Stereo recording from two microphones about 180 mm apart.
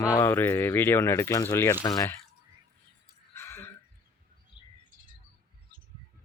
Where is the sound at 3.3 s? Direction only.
15° left (ahead or behind).